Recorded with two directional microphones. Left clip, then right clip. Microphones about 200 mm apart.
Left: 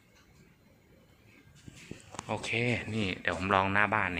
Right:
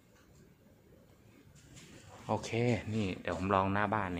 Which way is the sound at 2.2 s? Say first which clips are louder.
Left 2 dB; 25° right (ahead or behind).